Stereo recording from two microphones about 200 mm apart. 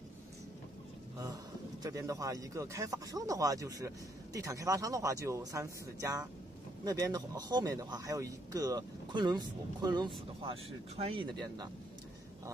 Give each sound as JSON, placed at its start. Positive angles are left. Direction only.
{"t": 1.8, "sound": "speech", "side_deg": -15}